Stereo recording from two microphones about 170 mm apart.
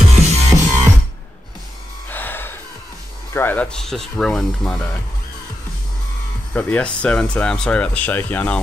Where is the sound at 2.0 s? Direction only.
10° left (ahead or behind).